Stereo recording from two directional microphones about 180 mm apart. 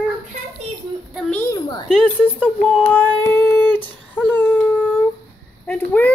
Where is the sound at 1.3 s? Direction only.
15° left (ahead or behind).